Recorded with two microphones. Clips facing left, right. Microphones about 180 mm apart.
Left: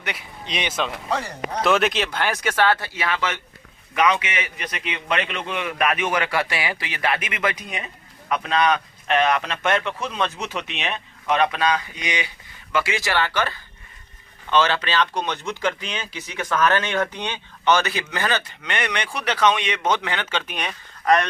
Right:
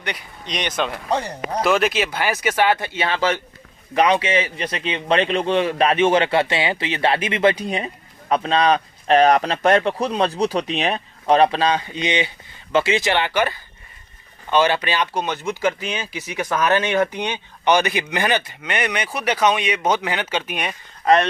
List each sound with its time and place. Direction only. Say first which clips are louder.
0.0 s speech: right 2 dB; 5° left (ahead or behind)
1.1 s speech: right 4 dB; 35° right (ahead or behind)
1.6 s speech: right 1 dB; centre (ahead or behind)
2.8 s a man's voice: right 5 dB; 25° right (ahead or behind); by 20.7 s 10° right (ahead or behind)
21.0 s speech: right 3 dB; 25° right (ahead or behind)